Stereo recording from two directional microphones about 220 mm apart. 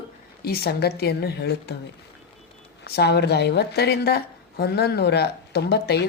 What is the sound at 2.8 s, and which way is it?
A woman's voice, 45° left (ahead or behind).